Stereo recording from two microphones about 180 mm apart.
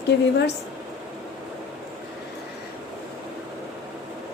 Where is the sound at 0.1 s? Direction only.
70° left (ahead or behind).